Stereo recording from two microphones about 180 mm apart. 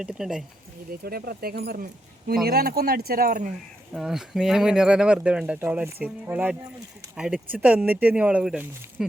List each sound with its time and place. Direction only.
0.0 s speech: 5° right (ahead or behind)
1.0 s speech: 60° right (ahead or behind)
3.9 s speech: centre (ahead or behind)